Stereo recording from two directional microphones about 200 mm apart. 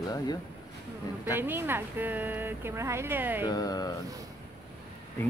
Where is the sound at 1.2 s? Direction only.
10° right (ahead or behind).